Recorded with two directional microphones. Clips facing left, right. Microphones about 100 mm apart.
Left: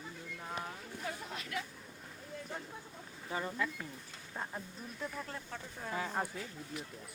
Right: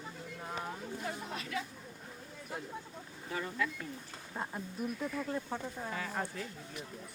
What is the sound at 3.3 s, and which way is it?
Speech, 25° left (ahead or behind).